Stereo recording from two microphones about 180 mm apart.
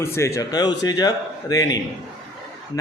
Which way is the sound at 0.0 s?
15° left (ahead or behind).